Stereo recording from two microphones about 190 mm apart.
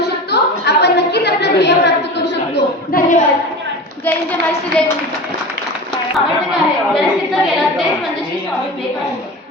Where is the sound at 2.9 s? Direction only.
50° left (ahead or behind).